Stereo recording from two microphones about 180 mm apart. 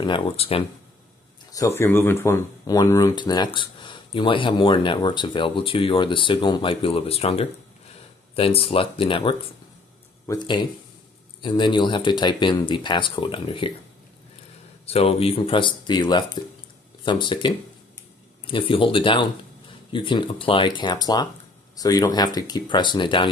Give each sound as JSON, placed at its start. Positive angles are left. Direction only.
{"t": 0.0, "sound": "speech", "side_deg": 30}
{"t": 1.5, "sound": "speech", "side_deg": 15}
{"t": 14.9, "sound": "speech", "side_deg": 35}